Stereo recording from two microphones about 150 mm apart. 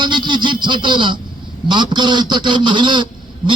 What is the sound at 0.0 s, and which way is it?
A man's voice, 30° right (ahead or behind).